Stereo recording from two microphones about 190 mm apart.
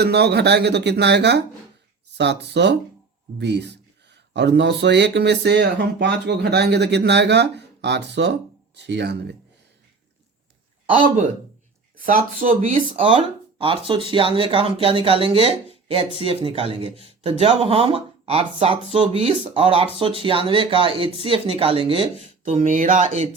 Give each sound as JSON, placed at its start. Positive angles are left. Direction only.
{"t": 0.0, "sound": "speech", "side_deg": -60}
{"t": 11.9, "sound": "speech", "side_deg": -45}
{"t": 13.6, "sound": "speech", "side_deg": -25}
{"t": 22.4, "sound": "speech", "side_deg": -40}